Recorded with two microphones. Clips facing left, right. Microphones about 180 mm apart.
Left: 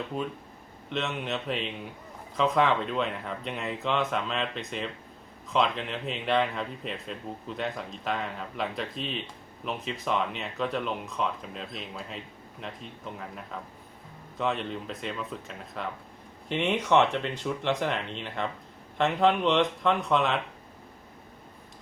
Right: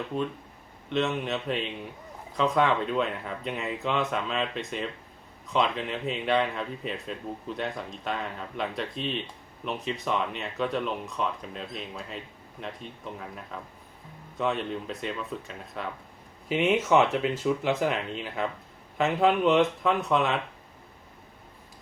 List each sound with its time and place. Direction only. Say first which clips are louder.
0.9 s speech: right 4 dB; centre (ahead or behind)